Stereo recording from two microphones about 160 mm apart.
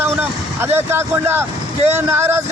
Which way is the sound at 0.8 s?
15° right (ahead or behind).